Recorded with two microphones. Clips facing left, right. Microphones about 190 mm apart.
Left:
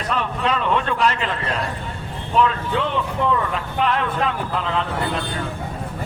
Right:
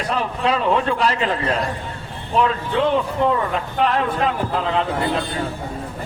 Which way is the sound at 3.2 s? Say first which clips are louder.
Right 2 dB; 35° right (ahead or behind).